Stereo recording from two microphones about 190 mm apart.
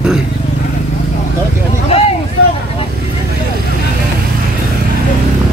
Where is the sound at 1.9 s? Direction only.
30° left (ahead or behind).